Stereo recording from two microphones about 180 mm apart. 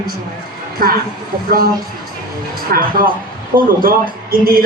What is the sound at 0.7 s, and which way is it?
Speech, 55° right (ahead or behind).